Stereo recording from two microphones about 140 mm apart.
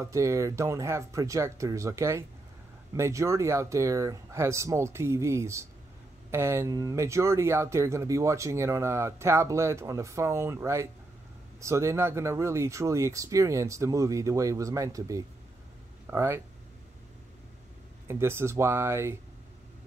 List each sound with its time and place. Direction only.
0.0 s speech: 20° right (ahead or behind)
18.0 s speech: 20° right (ahead or behind)